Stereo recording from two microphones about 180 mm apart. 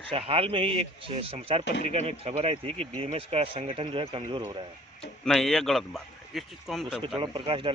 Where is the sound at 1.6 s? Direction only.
70° left (ahead or behind).